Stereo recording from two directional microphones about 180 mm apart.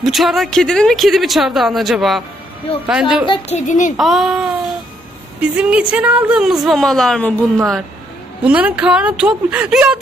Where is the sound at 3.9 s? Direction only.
Centre (ahead or behind).